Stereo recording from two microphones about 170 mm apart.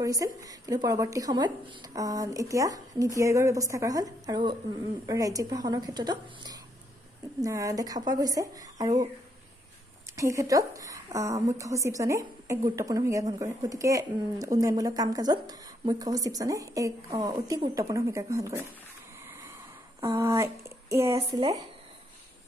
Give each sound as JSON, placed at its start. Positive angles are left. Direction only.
{"t": 0.0, "sound": "a woman's voice", "side_deg": -20}
{"t": 10.1, "sound": "a woman's voice", "side_deg": -20}
{"t": 19.2, "sound": "a sound", "side_deg": -15}